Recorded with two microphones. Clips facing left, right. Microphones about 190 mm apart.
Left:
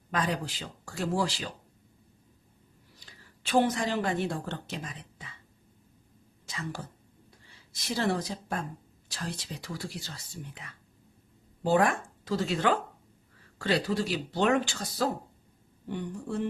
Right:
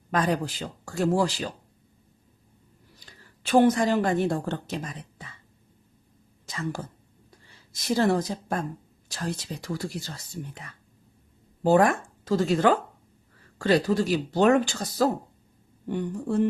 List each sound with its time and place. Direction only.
0.1 s a woman's voice: 45° right (ahead or behind)
3.4 s a woman's voice: 45° right (ahead or behind)
6.4 s a woman's voice: 45° right (ahead or behind)